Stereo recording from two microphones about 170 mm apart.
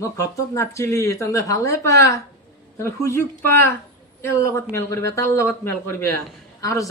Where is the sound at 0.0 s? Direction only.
15° left (ahead or behind).